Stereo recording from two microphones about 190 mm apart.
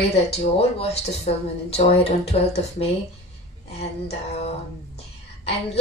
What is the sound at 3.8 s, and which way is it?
Speech, 35° left (ahead or behind).